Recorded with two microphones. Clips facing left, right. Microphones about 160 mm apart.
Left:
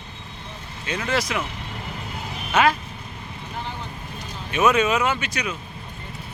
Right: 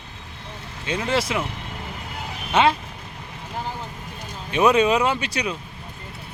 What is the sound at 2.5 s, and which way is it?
Speech, 25° right (ahead or behind).